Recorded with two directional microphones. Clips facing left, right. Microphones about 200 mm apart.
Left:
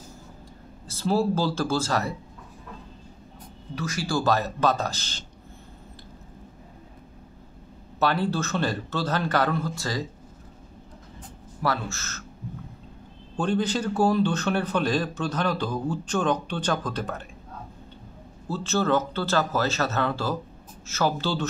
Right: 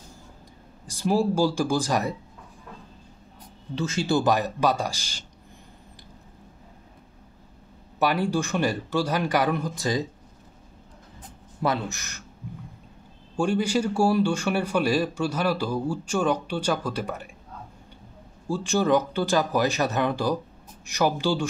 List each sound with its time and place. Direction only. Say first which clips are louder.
0.8 s speech: right 1 dB; 15° right (ahead or behind)
3.7 s speech: right 4 dB; 25° right (ahead or behind)
8.0 s speech: right 1 dB; 15° right (ahead or behind)
11.6 s speech: right 2 dB; 20° right (ahead or behind)
13.4 s speech: right 2 dB; 10° right (ahead or behind)
18.5 s speech: right 2 dB; 15° right (ahead or behind)